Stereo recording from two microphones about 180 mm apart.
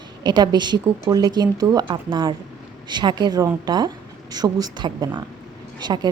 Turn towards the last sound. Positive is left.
turn(degrees=-25)  # may be behind; listen again after turning